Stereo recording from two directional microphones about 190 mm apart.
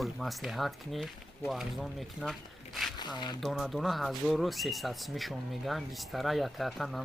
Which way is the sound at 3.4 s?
Centre (ahead or behind).